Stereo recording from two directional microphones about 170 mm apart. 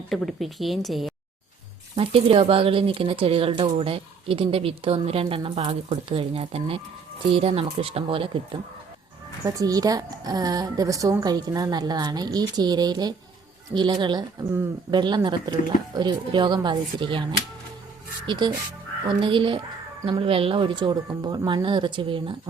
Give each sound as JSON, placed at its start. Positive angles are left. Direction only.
{"t": 0.1, "sound": "speech", "side_deg": 0}
{"t": 2.0, "sound": "speech", "side_deg": -35}
{"t": 9.6, "sound": "a woman's voice", "side_deg": -20}
{"t": 18.3, "sound": "a woman's voice", "side_deg": -25}